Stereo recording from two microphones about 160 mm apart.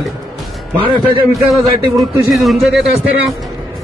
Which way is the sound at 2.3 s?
Centre (ahead or behind).